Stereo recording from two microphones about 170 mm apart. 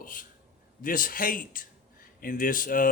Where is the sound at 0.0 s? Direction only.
55° left (ahead or behind).